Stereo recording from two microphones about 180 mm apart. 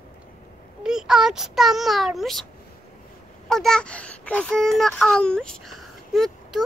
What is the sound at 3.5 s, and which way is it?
Speech, 5° left (ahead or behind).